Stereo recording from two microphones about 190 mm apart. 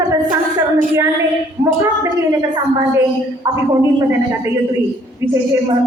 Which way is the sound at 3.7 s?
15° right (ahead or behind).